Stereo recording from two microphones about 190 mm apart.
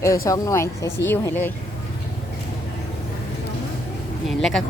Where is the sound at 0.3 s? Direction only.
15° left (ahead or behind).